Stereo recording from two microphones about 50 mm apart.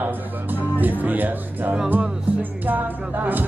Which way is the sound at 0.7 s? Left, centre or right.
Right.